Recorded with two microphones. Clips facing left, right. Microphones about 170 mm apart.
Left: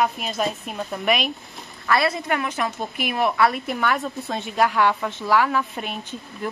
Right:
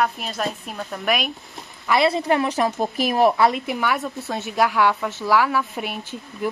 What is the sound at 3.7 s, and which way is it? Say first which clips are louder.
A woman's voice: even; 5° right (ahead or behind).